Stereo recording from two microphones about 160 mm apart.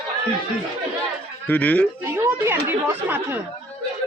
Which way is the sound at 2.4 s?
15° right (ahead or behind).